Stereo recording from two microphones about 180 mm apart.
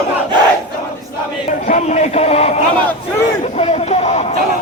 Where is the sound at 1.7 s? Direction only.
40° left (ahead or behind).